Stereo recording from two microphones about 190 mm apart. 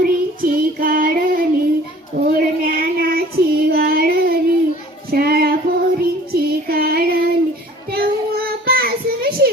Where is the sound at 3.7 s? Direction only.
55° right (ahead or behind).